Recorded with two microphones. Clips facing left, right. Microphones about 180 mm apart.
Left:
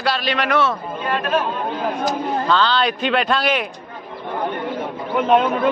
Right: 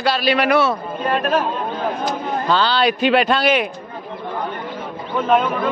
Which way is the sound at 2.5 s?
5° right (ahead or behind).